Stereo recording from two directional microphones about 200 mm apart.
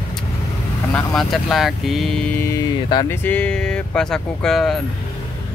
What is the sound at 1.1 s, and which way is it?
Speech, centre (ahead or behind).